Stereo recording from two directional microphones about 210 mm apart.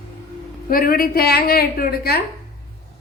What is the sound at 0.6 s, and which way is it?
Speech, 45° left (ahead or behind).